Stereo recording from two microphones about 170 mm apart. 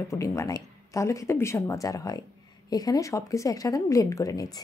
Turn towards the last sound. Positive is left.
turn(degrees=20)  # may be behind; listen again after turning